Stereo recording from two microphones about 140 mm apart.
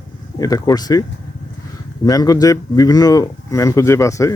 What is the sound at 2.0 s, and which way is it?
Speech, 25° left (ahead or behind).